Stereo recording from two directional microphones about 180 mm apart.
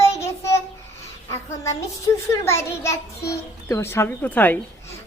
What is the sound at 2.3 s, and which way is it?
A child's voice, 15° left (ahead or behind).